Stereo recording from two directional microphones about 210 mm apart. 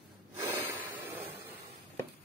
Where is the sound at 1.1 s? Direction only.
25° right (ahead or behind).